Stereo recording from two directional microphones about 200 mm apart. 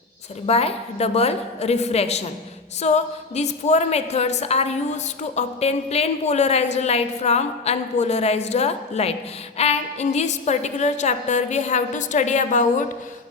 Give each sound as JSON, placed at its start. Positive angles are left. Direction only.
{"t": 0.4, "sound": "a woman's voice", "side_deg": 30}